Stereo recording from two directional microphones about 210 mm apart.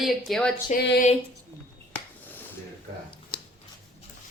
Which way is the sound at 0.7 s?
50° left (ahead or behind).